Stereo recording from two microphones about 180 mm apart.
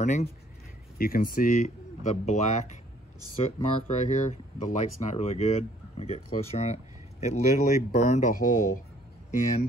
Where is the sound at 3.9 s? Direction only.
40° left (ahead or behind).